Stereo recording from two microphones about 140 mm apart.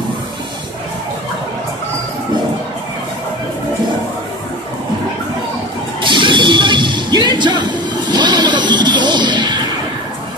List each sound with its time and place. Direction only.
6.0 s music: 35° right (ahead or behind)